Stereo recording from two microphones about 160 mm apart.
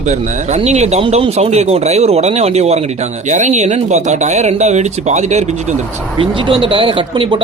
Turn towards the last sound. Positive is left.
turn(degrees=-30)  # may be behind; listen again after turning